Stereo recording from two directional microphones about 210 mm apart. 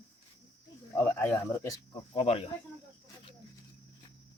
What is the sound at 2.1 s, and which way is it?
Speech, 25° left (ahead or behind).